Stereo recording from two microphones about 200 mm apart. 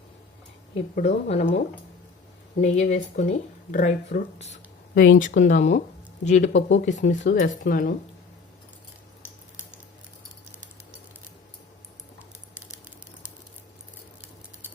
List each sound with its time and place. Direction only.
0.9 s speech: 35° left (ahead or behind)
6.5 s speech: 70° left (ahead or behind)
6.8 s speech: 40° left (ahead or behind)